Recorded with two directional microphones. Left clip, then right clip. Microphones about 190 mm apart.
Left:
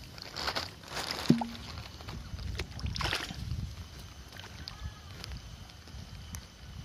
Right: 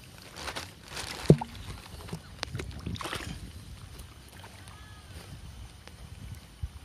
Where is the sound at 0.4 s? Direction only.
45° left (ahead or behind).